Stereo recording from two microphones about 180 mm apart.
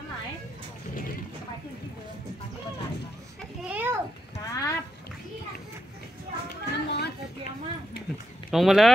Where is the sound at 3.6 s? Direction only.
10° right (ahead or behind).